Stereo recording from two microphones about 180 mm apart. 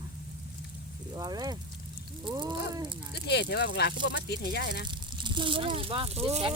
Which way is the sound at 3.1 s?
65° left (ahead or behind).